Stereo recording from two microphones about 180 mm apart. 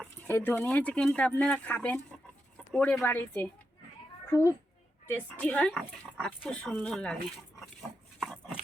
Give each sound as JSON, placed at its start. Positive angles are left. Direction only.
{"t": 0.0, "sound": "a child's voice", "side_deg": 10}
{"t": 7.8, "sound": "pig", "side_deg": 0}